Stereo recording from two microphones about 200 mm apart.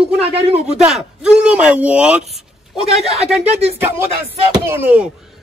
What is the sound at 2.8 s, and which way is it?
Speech, 30° right (ahead or behind).